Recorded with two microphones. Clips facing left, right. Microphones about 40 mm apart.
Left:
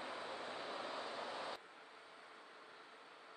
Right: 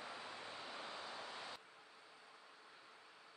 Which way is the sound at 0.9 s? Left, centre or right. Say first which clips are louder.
Left 4 dB; left.